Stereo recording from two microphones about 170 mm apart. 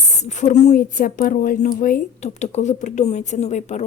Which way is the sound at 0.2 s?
45° left (ahead or behind).